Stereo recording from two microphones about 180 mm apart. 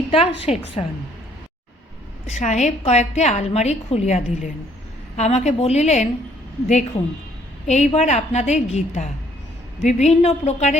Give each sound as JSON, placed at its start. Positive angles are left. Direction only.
{"t": 0.1, "sound": "a woman's voice", "side_deg": 35}
{"t": 2.3, "sound": "a woman's voice", "side_deg": 40}